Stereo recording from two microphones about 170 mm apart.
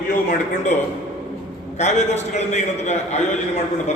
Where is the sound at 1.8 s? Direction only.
40° left (ahead or behind).